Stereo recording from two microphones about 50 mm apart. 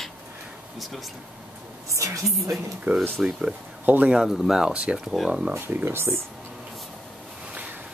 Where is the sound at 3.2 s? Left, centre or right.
Centre.